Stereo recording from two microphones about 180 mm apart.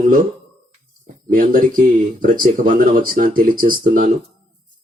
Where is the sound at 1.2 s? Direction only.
50° right (ahead or behind).